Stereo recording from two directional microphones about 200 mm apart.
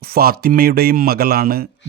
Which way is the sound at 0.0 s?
50° right (ahead or behind).